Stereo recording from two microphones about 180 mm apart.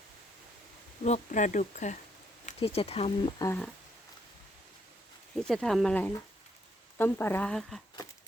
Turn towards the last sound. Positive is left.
turn(degrees=0)  # may be behind; listen again after turning